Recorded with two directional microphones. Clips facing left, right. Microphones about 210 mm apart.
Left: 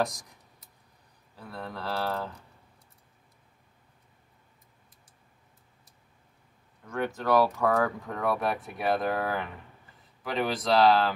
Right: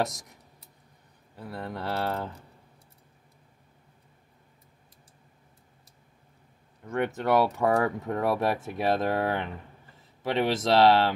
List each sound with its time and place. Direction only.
0.0 s a sound: 25° right (ahead or behind)
1.3 s speech: 20° right (ahead or behind)
6.8 s speech: 20° right (ahead or behind)